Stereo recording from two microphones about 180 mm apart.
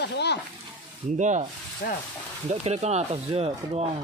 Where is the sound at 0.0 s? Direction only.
70° left (ahead or behind).